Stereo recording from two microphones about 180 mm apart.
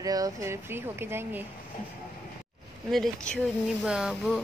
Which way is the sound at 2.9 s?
Centre (ahead or behind).